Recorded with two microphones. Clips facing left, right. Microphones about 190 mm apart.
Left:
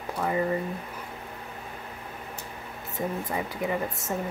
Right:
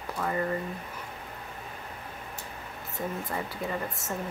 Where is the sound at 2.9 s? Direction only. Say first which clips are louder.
Left 3 dB; 15° left (ahead or behind).